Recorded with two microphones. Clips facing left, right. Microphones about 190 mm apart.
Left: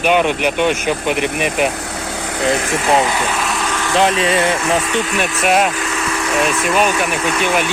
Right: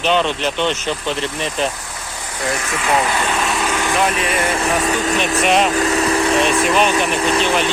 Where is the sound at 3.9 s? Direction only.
25° left (ahead or behind).